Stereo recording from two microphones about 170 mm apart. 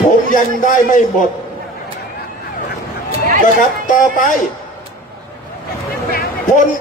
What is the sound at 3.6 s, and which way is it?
Speech, 50° left (ahead or behind).